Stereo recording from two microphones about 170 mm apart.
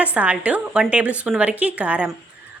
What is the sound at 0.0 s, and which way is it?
A woman's voice, 10° right (ahead or behind).